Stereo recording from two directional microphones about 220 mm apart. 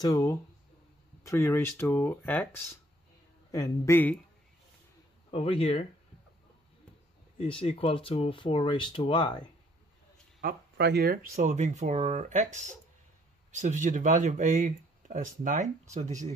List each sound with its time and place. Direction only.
0.0 s speech: 15° left (ahead or behind)
5.3 s speech: 25° left (ahead or behind)
7.3 s speech: 25° left (ahead or behind)
10.4 s speech: 45° right (ahead or behind)